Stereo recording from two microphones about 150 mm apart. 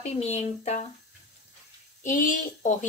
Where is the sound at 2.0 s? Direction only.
60° left (ahead or behind).